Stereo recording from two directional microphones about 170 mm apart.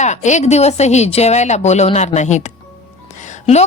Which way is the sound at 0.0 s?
45° left (ahead or behind).